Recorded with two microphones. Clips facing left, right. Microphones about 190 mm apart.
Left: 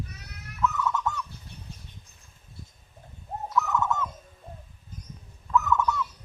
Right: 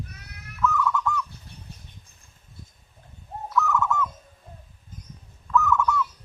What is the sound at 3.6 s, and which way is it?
Bird, 20° left (ahead or behind).